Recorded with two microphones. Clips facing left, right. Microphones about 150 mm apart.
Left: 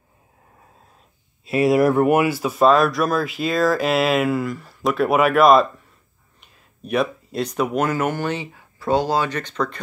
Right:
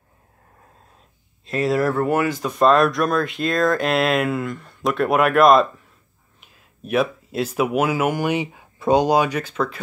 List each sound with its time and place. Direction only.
1.4 s speech: 10° left (ahead or behind); by 9.8 s 5° right (ahead or behind)